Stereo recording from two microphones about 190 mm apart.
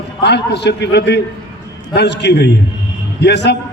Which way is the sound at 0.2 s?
65° left (ahead or behind).